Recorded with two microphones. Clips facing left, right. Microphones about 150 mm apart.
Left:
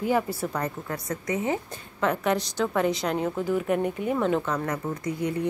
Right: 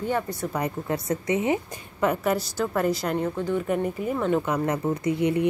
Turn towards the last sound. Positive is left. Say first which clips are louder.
# right 5 dB
turn(degrees=-20)  # may be behind; listen again after turning